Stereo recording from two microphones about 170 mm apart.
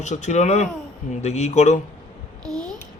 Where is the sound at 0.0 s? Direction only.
45° left (ahead or behind).